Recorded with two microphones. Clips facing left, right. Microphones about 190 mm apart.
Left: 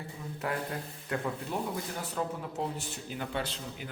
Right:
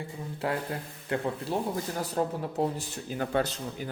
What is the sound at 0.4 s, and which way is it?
A man's voice, 30° right (ahead or behind).